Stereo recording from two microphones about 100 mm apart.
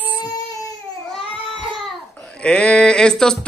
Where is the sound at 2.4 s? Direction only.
10° left (ahead or behind).